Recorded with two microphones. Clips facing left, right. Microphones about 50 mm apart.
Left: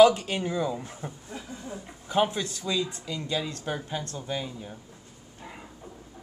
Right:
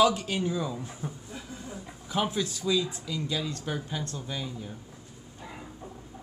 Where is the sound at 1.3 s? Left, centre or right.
Left.